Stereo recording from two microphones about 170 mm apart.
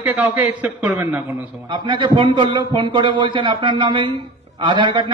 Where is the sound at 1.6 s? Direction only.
25° right (ahead or behind).